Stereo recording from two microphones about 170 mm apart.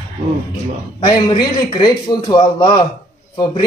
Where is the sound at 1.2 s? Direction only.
25° left (ahead or behind).